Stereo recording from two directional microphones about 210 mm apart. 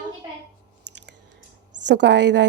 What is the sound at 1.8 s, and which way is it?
Speech, 55° right (ahead or behind).